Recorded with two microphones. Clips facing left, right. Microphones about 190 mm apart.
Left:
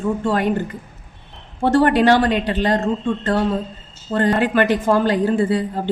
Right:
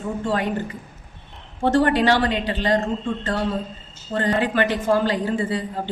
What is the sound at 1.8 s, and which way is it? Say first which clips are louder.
Speech: left 4 dB; 55° left (ahead or behind).